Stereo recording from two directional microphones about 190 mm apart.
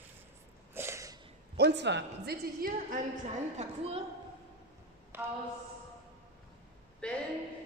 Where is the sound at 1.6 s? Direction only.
65° right (ahead or behind).